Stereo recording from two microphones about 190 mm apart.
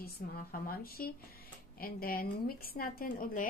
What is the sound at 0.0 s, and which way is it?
A woman's voice, 50° left (ahead or behind).